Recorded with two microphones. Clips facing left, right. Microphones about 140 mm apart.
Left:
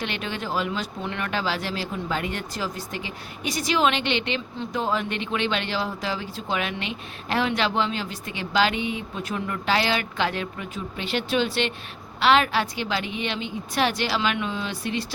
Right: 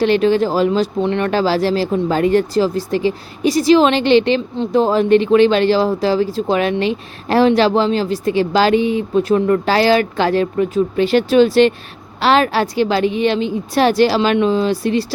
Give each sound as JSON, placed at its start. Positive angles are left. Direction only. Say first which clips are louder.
{"t": 0.0, "sound": "speech", "louder": "right 17 dB", "side_deg": -35}
{"t": 4.5, "sound": "speech", "louder": "right 13 dB", "side_deg": -20}
{"t": 4.8, "sound": "speech", "louder": "right 14 dB", "side_deg": -35}